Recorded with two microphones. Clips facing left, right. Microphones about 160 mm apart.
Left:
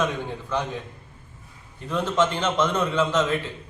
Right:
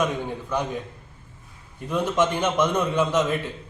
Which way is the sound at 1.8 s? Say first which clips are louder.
Right 1 dB; 15° right (ahead or behind).